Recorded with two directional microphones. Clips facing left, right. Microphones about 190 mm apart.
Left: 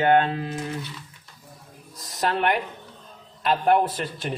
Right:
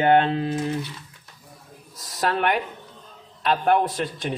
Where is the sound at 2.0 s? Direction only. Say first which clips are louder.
Right 1 dB; centre (ahead or behind).